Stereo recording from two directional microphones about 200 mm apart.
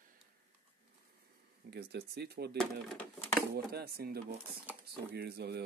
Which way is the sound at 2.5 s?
Centre (ahead or behind).